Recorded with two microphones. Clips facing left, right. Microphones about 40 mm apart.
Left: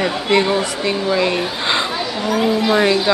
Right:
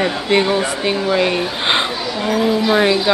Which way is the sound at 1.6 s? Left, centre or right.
Right.